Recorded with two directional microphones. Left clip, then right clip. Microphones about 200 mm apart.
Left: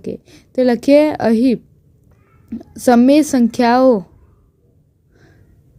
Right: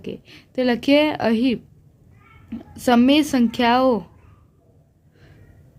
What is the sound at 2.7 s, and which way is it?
A woman's voice, 25° left (ahead or behind).